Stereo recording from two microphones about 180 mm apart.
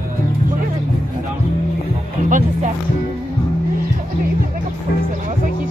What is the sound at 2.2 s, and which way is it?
Music, 45° right (ahead or behind).